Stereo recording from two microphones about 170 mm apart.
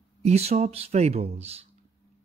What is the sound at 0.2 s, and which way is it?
Speech, 40° right (ahead or behind).